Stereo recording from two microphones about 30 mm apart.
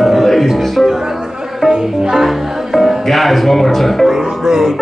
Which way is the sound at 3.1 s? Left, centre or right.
Centre.